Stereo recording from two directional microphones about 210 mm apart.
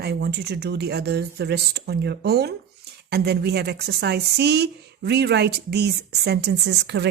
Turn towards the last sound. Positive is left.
turn(degrees=-55)  # may be behind; listen again after turning